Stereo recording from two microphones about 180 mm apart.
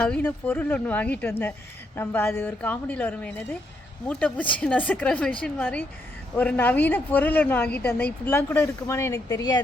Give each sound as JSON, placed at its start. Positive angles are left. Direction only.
{"t": 0.0, "sound": "speech", "side_deg": 10}